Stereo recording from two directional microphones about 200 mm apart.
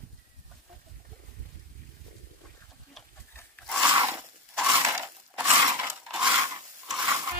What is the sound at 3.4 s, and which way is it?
Rub, 5° left (ahead or behind).